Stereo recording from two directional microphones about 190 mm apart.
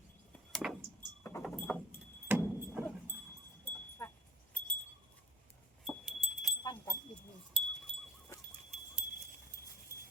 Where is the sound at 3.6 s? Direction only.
10° left (ahead or behind).